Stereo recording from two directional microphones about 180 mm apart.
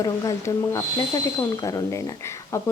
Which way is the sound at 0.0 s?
20° left (ahead or behind).